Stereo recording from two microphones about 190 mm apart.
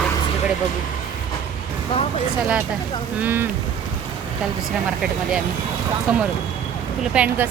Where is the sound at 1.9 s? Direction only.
25° left (ahead or behind).